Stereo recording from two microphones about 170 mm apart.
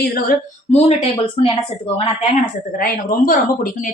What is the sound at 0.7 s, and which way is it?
Speech, 40° left (ahead or behind).